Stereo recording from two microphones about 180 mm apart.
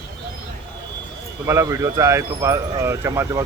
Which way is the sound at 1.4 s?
15° right (ahead or behind).